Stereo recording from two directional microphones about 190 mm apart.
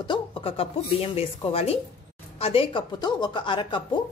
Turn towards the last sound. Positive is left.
turn(degrees=25)  # may be behind; listen again after turning